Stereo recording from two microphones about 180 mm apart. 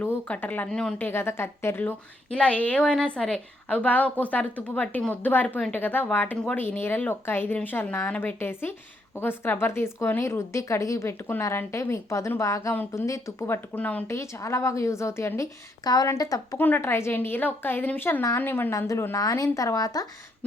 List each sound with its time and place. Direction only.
0.0 s a woman's voice: 10° left (ahead or behind)